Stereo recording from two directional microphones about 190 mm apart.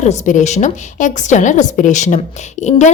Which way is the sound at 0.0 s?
40° left (ahead or behind).